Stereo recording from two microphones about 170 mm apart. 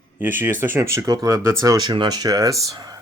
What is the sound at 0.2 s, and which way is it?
Speech, 10° right (ahead or behind).